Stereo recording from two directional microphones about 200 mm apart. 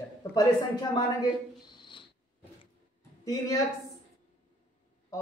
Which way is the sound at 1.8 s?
25° left (ahead or behind).